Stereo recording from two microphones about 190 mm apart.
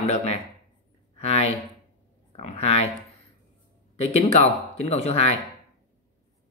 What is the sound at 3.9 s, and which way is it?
Speech, 35° left (ahead or behind).